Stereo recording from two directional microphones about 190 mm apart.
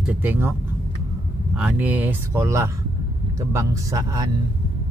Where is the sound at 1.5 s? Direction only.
5° right (ahead or behind).